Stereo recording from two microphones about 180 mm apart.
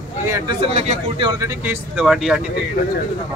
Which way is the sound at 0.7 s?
35° right (ahead or behind).